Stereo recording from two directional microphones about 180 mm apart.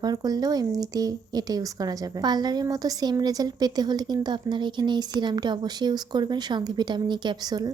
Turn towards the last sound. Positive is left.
turn(degrees=-20)  # may be behind; listen again after turning